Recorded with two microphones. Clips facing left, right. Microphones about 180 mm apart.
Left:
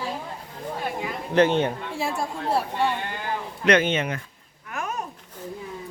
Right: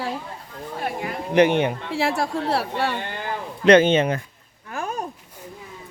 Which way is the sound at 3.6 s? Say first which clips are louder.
Right 7 dB; 30° right (ahead or behind).